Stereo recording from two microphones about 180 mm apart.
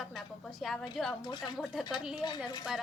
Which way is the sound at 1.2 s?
25° left (ahead or behind).